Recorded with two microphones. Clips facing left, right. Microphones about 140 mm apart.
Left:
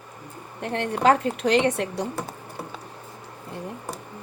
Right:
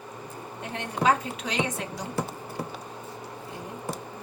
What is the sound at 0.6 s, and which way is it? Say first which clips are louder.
A woman's voice: left 5 dB; 70° left (ahead or behind).